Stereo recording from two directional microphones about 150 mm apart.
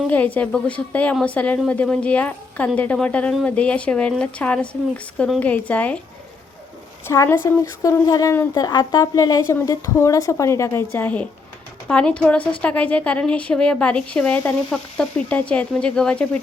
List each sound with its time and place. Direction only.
0.1 s a woman's voice: 10° left (ahead or behind)
7.1 s a woman's voice: 20° left (ahead or behind)